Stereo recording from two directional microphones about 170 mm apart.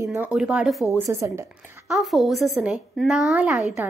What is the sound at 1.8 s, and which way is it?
A woman's voice, centre (ahead or behind).